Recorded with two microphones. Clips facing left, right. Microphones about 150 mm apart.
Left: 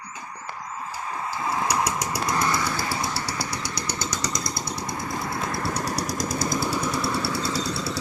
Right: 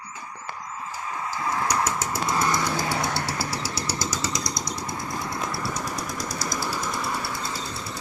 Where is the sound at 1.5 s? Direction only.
15° left (ahead or behind).